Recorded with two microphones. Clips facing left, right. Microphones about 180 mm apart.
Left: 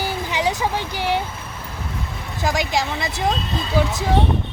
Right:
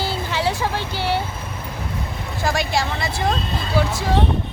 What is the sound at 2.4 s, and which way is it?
Speech, 15° left (ahead or behind).